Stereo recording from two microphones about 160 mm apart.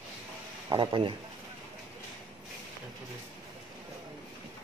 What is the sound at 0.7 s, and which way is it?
Speech, 30° right (ahead or behind).